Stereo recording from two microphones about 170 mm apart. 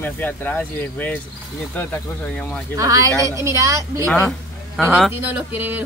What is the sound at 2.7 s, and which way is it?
Speech, 20° right (ahead or behind).